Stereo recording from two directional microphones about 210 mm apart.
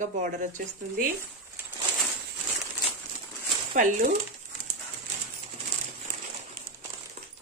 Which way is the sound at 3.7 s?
35° right (ahead or behind).